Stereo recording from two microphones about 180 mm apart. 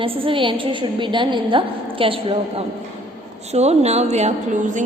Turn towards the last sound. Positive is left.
turn(degrees=-40)  # may be behind; listen again after turning